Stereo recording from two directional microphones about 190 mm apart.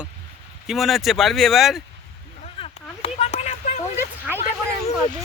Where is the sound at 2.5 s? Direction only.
30° left (ahead or behind).